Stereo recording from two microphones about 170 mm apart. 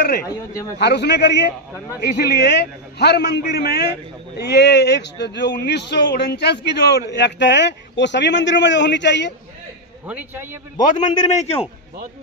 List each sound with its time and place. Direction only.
0.0 s speech: 60° left (ahead or behind)
0.7 s a man's voice: 80° left
2.0 s a man's voice: 75° left (ahead or behind); by 9.3 s 90° left
10.0 s a man's voice: 10° right (ahead or behind)
11.0 s a man's voice: 45° left (ahead or behind)